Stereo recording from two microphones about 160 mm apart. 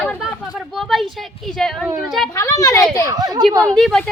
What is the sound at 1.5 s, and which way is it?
Speech, 5° left (ahead or behind).